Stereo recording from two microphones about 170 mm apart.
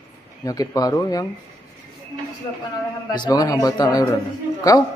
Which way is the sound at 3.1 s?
25° left (ahead or behind).